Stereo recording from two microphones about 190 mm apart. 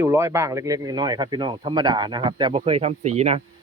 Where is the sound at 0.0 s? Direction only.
15° right (ahead or behind); by 3.4 s 35° right (ahead or behind).